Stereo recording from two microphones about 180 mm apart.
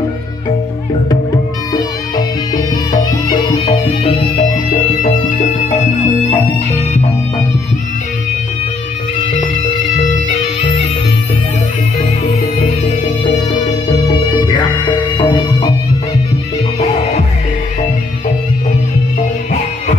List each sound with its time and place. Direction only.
1.7 s music: 20° left (ahead or behind)
14.4 s music: 25° left (ahead or behind)